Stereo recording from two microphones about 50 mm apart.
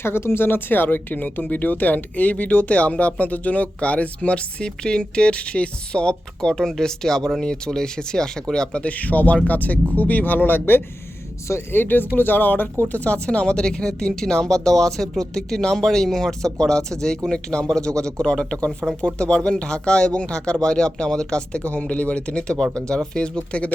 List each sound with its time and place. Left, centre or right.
0.0 s speech: left
13.2 s speech: left